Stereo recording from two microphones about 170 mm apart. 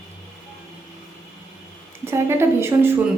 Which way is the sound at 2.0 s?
15° right (ahead or behind).